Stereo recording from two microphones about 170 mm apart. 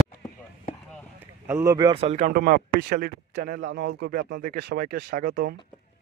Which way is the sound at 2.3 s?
65° right (ahead or behind).